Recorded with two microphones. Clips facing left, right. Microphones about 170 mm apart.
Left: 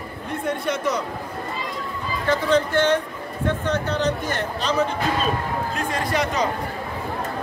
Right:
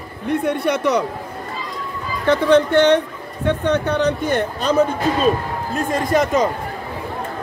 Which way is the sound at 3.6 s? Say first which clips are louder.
Right 6 dB; 60° right (ahead or behind).